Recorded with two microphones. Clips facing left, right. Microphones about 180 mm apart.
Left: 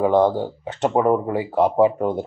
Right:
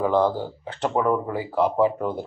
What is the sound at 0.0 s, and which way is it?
Speech, 25° left (ahead or behind).